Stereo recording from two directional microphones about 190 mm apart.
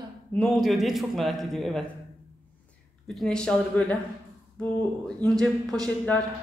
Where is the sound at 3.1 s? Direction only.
5° left (ahead or behind).